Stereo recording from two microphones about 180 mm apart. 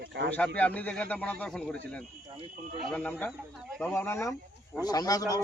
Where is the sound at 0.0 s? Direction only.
70° right (ahead or behind).